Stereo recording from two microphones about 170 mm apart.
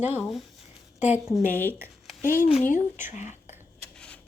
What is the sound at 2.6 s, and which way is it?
Speech, 50° left (ahead or behind).